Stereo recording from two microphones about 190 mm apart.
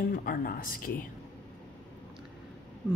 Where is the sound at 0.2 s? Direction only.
50° left (ahead or behind).